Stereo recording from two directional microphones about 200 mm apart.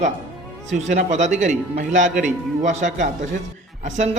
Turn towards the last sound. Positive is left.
turn(degrees=-35)  # may be behind; listen again after turning